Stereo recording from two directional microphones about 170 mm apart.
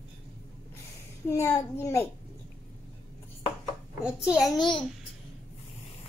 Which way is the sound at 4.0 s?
5° right (ahead or behind).